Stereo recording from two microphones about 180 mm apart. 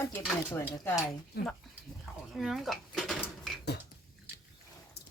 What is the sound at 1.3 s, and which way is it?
Speech, 60° left (ahead or behind).